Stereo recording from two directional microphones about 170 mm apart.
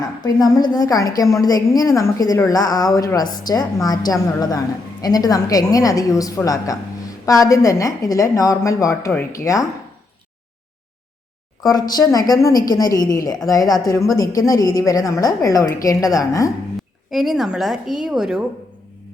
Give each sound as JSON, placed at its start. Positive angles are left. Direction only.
{"t": 0.2, "sound": "a woman's voice", "side_deg": 20}
{"t": 11.7, "sound": "a woman's voice", "side_deg": 25}
{"t": 17.1, "sound": "a woman's voice", "side_deg": 0}